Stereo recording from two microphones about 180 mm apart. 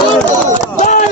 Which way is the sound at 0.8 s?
45° left (ahead or behind).